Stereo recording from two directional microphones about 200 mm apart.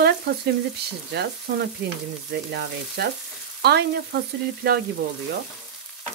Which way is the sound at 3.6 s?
55° right (ahead or behind).